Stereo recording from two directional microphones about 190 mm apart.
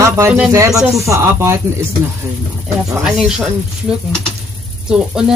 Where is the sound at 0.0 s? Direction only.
15° right (ahead or behind).